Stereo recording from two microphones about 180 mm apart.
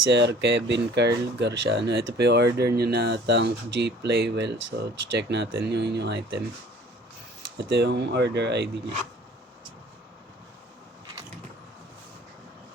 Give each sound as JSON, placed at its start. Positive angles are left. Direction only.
{"t": 0.1, "sound": "speech", "side_deg": -70}
{"t": 7.7, "sound": "speech", "side_deg": -65}